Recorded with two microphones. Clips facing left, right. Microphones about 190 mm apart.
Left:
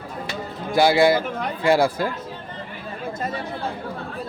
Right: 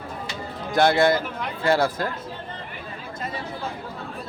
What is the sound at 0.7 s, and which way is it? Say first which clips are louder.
Speech: left 2 dB; 10° left (ahead or behind).